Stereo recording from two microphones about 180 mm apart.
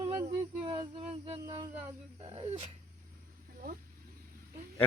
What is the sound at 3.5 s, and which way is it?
Vehicle, 50° right (ahead or behind).